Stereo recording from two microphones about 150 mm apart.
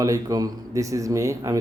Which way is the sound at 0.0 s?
25° right (ahead or behind).